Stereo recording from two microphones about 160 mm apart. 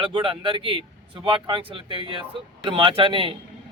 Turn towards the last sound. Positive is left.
turn(degrees=-30)  # may be behind; listen again after turning